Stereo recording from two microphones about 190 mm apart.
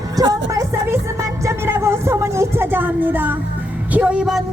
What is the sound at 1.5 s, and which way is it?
A man's voice, 15° right (ahead or behind).